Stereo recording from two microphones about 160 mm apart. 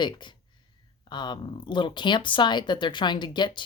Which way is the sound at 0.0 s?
30° left (ahead or behind).